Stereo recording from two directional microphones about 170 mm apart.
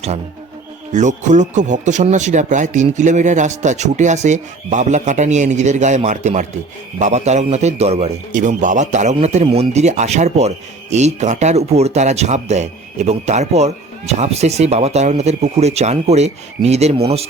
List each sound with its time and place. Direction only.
0.9 s a man's voice: 45° right (ahead or behind)